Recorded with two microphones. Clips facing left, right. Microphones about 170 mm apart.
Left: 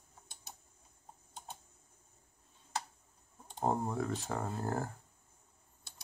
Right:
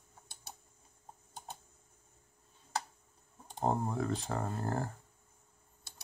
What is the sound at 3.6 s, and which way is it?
Speech, centre (ahead or behind).